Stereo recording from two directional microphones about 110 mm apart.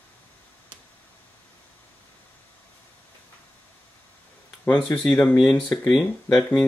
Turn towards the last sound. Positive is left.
turn(degrees=0)  # may be behind; listen again after turning